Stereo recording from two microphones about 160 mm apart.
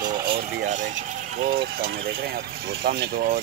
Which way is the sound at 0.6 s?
50° right (ahead or behind).